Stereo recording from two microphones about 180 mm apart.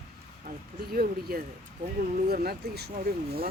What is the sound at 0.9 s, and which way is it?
Speech, 55° right (ahead or behind).